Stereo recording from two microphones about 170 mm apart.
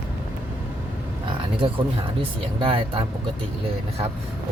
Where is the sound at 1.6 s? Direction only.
30° right (ahead or behind).